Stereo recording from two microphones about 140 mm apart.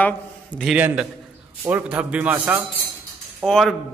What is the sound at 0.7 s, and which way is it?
A man's voice, 10° right (ahead or behind).